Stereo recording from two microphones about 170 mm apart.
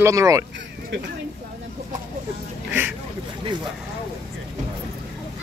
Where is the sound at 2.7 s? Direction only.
10° right (ahead or behind).